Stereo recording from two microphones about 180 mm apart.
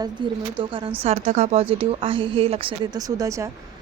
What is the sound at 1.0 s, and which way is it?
Speech, 40° right (ahead or behind).